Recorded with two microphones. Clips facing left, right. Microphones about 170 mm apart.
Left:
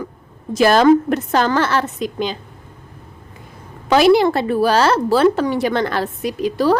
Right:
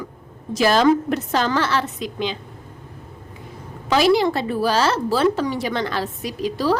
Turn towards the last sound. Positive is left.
turn(degrees=55)  # may be behind; listen again after turning